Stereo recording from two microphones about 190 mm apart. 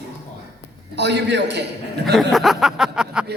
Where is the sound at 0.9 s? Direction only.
65° right (ahead or behind).